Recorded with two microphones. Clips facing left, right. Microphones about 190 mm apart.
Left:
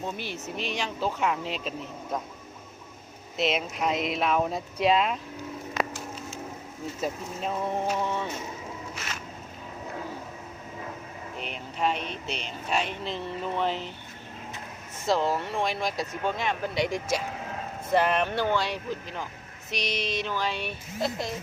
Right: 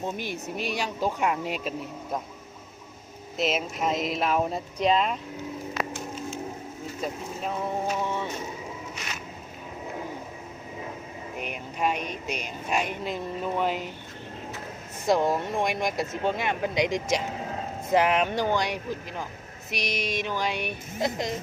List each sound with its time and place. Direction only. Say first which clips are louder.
0.0 s speech: right 2 dB; 15° right (ahead or behind)
3.3 s speech: even; centre (ahead or behind)
7.0 s speech: left 1 dB; centre (ahead or behind)
11.3 s speech: right 1 dB; 10° right (ahead or behind)
15.0 s speech: right 2 dB; 15° right (ahead or behind)